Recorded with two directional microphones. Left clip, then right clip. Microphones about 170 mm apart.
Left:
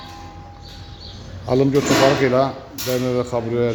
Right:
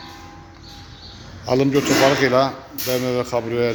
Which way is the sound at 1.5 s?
10° left (ahead or behind).